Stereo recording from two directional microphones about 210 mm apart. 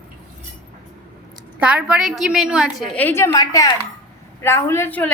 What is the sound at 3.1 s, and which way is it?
A woman's voice, 10° left (ahead or behind).